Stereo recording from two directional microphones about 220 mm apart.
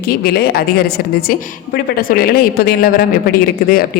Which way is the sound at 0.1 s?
45° left (ahead or behind).